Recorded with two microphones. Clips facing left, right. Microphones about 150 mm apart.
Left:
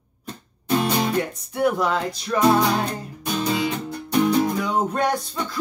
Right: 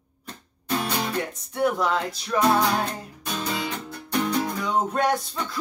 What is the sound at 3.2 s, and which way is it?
Music, 10° left (ahead or behind).